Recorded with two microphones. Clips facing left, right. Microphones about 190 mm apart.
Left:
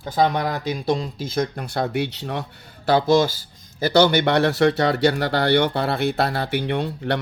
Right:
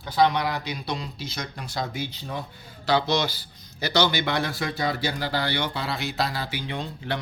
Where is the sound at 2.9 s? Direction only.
50° left (ahead or behind).